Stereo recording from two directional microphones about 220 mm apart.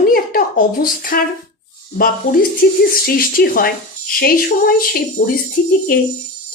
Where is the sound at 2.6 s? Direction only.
40° left (ahead or behind).